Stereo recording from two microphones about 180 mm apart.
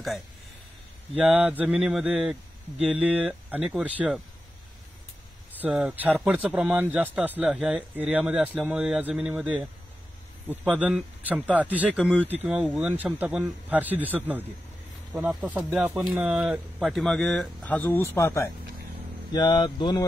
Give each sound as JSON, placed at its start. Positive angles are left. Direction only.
{"t": 1.1, "sound": "speech", "side_deg": -5}
{"t": 5.6, "sound": "speech", "side_deg": -5}